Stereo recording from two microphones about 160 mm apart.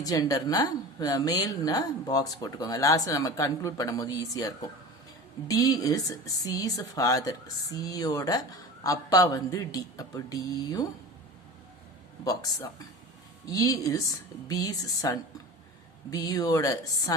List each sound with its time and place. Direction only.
0.0 s speech: 20° left (ahead or behind)
12.2 s speech: 25° left (ahead or behind)